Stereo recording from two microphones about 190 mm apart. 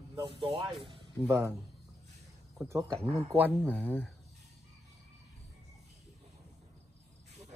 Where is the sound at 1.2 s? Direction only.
15° right (ahead or behind).